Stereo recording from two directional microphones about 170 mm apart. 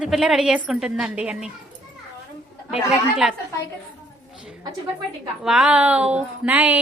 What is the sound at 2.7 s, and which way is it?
Speech, 5° right (ahead or behind).